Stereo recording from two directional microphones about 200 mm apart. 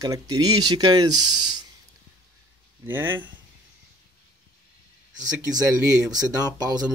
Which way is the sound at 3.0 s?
70° right (ahead or behind).